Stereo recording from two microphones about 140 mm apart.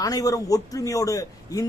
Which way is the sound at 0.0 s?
25° left (ahead or behind).